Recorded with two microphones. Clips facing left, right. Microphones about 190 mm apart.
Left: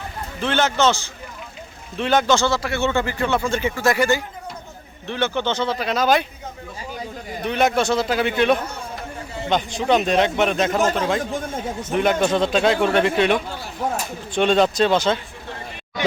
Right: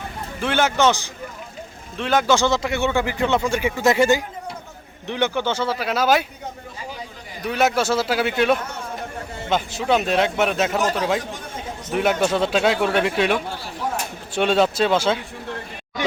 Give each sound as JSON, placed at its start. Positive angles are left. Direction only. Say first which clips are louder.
{"t": 0.4, "sound": "speech", "louder": "even", "side_deg": -10}
{"t": 2.0, "sound": "speech", "louder": "even", "side_deg": -5}
{"t": 7.4, "sound": "a man's voice", "louder": "left 1 dB", "side_deg": -5}
{"t": 9.5, "sound": "a man's voice", "louder": "left 1 dB", "side_deg": -5}